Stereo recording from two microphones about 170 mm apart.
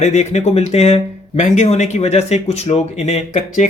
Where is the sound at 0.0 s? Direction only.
40° left (ahead or behind).